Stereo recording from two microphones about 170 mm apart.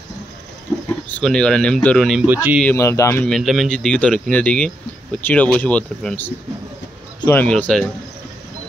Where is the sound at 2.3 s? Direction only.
10° right (ahead or behind).